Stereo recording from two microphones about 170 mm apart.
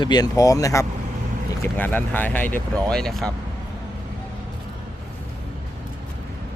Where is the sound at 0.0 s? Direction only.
25° left (ahead or behind); by 3.3 s 5° left (ahead or behind).